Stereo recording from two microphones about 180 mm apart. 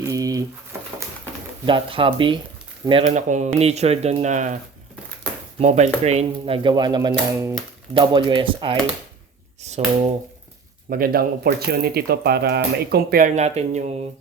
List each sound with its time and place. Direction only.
0.0 s a sound: 20° right (ahead or behind)
1.6 s speech: 30° right (ahead or behind)
3.1 s speech: 40° right (ahead or behind)
5.5 s speech: 40° right (ahead or behind)
9.6 s a sound: 40° right (ahead or behind)
10.8 s speech: 55° right (ahead or behind); by 13.9 s 40° right (ahead or behind)